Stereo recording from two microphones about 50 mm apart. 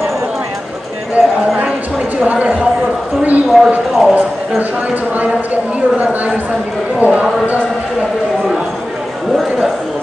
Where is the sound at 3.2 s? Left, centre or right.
Right.